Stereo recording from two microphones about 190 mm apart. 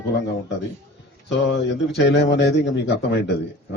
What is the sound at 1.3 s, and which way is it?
A man's voice, 65° left (ahead or behind).